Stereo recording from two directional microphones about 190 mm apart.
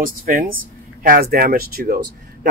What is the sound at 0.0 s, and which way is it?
Speech, 45° right (ahead or behind).